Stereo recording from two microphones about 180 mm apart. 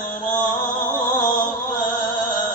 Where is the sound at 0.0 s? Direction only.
45° left (ahead or behind).